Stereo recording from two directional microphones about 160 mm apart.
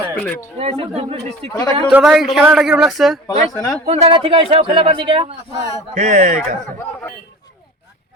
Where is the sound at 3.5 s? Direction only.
15° left (ahead or behind).